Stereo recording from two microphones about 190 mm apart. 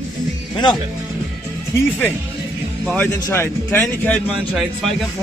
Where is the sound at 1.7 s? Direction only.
10° left (ahead or behind).